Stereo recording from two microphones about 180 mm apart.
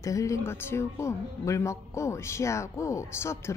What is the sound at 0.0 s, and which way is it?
Speech, 15° left (ahead or behind).